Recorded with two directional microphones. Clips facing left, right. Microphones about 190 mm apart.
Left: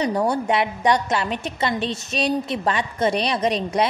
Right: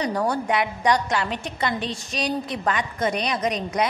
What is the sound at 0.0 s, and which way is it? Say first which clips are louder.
A woman's voice: left 3 dB; 20° left (ahead or behind).